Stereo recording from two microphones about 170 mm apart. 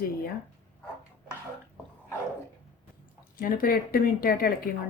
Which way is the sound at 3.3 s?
55° left (ahead or behind).